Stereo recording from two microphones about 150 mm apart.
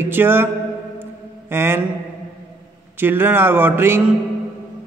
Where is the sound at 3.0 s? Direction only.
15° right (ahead or behind).